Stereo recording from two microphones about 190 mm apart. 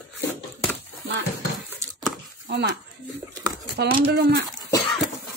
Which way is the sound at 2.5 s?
60° right (ahead or behind).